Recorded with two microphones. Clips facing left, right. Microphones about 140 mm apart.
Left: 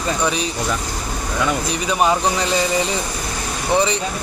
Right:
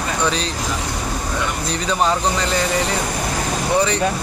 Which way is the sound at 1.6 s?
15° left (ahead or behind).